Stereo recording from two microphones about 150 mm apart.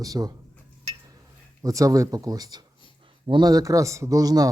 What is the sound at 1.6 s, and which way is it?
A man's voice, 25° right (ahead or behind).